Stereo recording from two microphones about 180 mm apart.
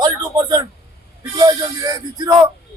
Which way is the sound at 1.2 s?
20° right (ahead or behind).